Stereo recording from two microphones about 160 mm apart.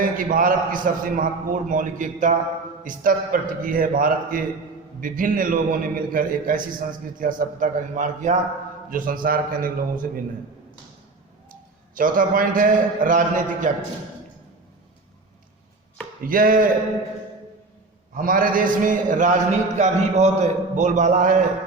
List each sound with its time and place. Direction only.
0.0 s a man's voice: 60° right (ahead or behind)
11.9 s a man's voice: 60° right (ahead or behind)
16.2 s a man's voice: 60° right (ahead or behind)
18.2 s a man's voice: 60° right (ahead or behind)